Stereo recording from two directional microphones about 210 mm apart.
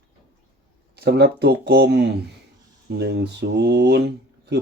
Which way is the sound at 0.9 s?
50° right (ahead or behind).